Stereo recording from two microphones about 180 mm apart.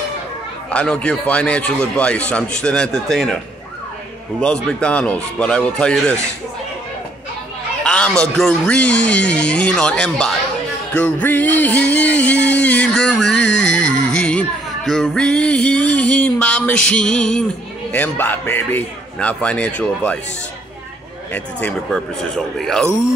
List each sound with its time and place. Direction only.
0.7 s speech: 5° left (ahead or behind)
4.6 s speech: 5° left (ahead or behind)
7.8 s speech: 5° left (ahead or behind)
12.4 s a sound: 10° left (ahead or behind)
13.4 s music: 90° left
14.1 s music: 5° left (ahead or behind)
17.9 s speech: 10° left (ahead or behind)
21.3 s speech: 10° left (ahead or behind)
21.9 s music: centre (ahead or behind)